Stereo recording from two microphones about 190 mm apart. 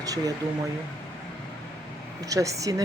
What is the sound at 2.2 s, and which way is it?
Speech, 15° right (ahead or behind).